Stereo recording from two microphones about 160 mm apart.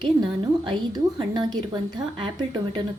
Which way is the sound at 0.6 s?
25° right (ahead or behind).